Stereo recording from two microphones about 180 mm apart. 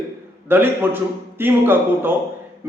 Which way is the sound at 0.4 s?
10° right (ahead or behind).